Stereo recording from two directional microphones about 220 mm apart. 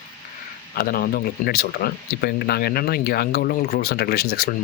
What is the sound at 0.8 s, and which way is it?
Speech, 40° left (ahead or behind).